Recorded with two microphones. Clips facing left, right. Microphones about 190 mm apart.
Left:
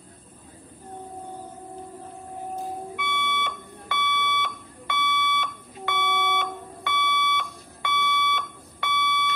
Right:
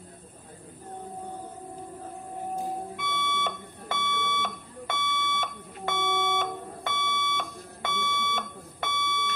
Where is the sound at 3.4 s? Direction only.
45° right (ahead or behind).